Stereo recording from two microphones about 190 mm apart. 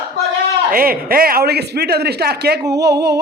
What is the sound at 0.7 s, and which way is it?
A man's voice, 50° right (ahead or behind).